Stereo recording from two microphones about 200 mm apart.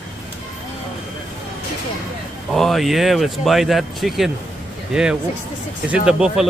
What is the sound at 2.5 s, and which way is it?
Speech, centre (ahead or behind).